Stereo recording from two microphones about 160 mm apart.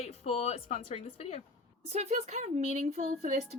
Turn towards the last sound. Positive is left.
turn(degrees=-45)  # may be behind; listen again after turning